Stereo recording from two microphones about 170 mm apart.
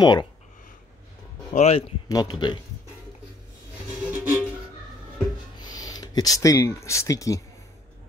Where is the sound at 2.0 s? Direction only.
20° left (ahead or behind).